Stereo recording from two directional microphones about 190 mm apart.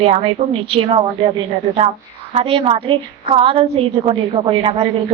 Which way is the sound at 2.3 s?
30° right (ahead or behind).